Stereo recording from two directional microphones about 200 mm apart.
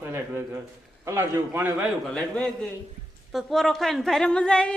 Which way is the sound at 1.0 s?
15° right (ahead or behind).